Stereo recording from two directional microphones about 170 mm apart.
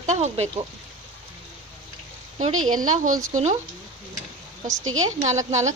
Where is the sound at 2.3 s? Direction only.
45° right (ahead or behind).